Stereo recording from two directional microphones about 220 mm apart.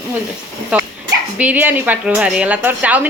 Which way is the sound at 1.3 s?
5° right (ahead or behind).